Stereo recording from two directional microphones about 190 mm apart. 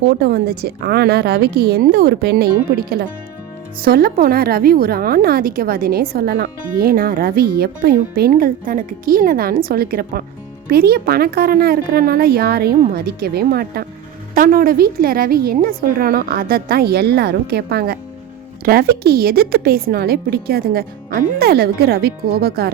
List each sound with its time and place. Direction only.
0.1 s a woman's voice: 55° right (ahead or behind)
3.8 s a woman's voice: 50° right (ahead or behind)